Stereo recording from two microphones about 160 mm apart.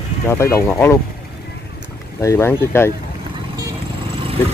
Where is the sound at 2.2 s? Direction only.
15° left (ahead or behind).